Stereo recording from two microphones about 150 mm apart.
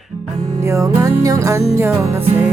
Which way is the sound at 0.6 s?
20° right (ahead or behind).